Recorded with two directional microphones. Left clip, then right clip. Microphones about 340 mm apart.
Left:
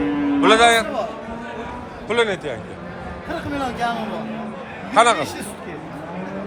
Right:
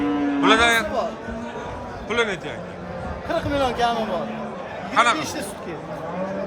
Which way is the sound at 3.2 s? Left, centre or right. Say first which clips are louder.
Right 4 dB; right.